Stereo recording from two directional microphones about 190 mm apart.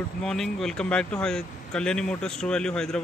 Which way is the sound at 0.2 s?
Centre (ahead or behind).